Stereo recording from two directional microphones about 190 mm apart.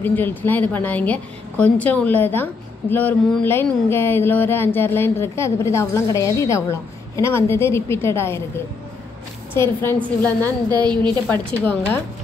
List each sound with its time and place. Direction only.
0.0 s a woman's voice: 10° left (ahead or behind)
9.8 s a woman's voice: 10° left (ahead or behind)